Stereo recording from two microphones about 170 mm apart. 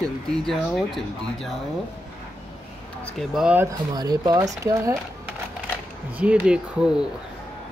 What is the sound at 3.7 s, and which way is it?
Speech, 25° right (ahead or behind).